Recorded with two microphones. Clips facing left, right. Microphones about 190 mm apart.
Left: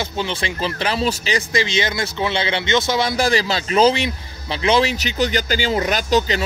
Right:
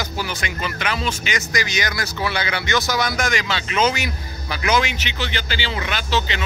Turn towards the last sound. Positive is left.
turn(degrees=40)  # may be behind; listen again after turning